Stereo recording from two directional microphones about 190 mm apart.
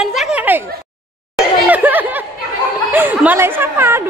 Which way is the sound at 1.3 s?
10° right (ahead or behind).